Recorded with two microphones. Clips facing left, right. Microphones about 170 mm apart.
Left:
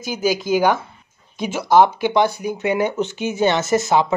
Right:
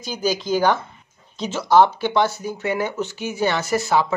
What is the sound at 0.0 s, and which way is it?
Speech, 10° left (ahead or behind).